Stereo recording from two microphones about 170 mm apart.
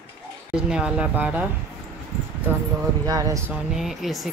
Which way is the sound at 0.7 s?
5° right (ahead or behind).